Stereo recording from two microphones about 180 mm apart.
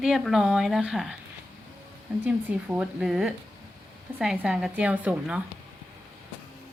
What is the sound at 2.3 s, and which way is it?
A woman's voice, 5° right (ahead or behind).